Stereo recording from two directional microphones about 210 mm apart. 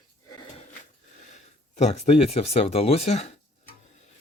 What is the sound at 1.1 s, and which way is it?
Speech, 35° left (ahead or behind).